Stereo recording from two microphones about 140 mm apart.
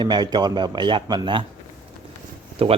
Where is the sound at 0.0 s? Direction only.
30° right (ahead or behind).